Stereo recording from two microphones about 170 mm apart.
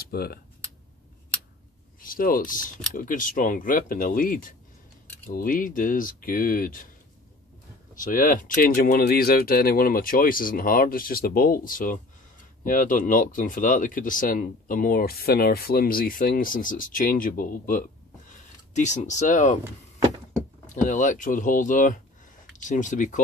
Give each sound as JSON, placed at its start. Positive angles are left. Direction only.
{"t": 0.1, "sound": "speech", "side_deg": 65}
{"t": 2.0, "sound": "speech", "side_deg": 55}
{"t": 7.9, "sound": "speech", "side_deg": 50}
{"t": 20.6, "sound": "speech", "side_deg": 45}